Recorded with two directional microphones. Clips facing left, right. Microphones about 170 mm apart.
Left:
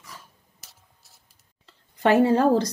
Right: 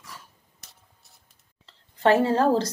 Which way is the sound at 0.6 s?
Centre (ahead or behind).